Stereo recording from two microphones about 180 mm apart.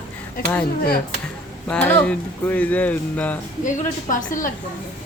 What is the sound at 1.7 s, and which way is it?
Speech, 10° left (ahead or behind).